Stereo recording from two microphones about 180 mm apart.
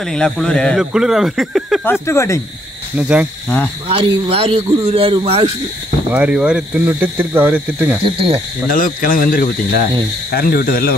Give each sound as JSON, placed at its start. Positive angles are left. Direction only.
{"t": 0.0, "sound": "speech", "side_deg": 5}
{"t": 1.9, "sound": "speech", "side_deg": 15}
{"t": 3.0, "sound": "speech", "side_deg": -5}
{"t": 3.4, "sound": "speech", "side_deg": 10}
{"t": 3.9, "sound": "a man's voice", "side_deg": -30}
{"t": 6.1, "sound": "speech", "side_deg": -5}
{"t": 8.0, "sound": "a man's voice", "side_deg": -30}
{"t": 8.6, "sound": "speech", "side_deg": 50}